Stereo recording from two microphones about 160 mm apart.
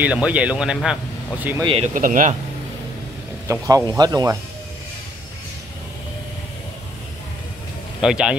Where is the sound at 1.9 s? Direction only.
55° right (ahead or behind).